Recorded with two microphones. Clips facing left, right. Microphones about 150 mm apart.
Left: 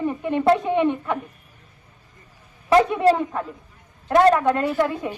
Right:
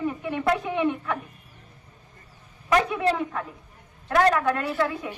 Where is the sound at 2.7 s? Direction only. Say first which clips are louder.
Left 6 dB; 30° left (ahead or behind).